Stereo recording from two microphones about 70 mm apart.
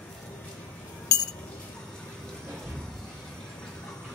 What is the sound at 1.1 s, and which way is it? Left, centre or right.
Chink, left.